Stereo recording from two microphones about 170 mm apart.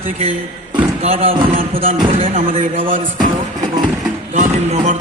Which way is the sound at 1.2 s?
35° right (ahead or behind).